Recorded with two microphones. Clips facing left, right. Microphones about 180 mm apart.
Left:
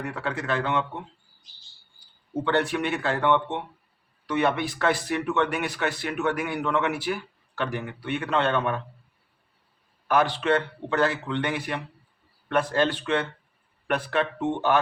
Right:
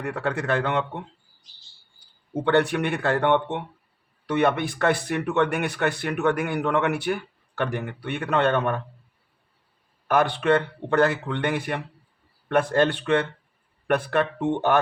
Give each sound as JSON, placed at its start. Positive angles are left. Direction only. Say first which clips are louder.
{"t": 0.0, "sound": "speech", "louder": "right 4 dB", "side_deg": -50}
{"t": 2.4, "sound": "speech", "louder": "right 3 dB", "side_deg": -55}
{"t": 10.1, "sound": "speech", "louder": "right 2 dB", "side_deg": -55}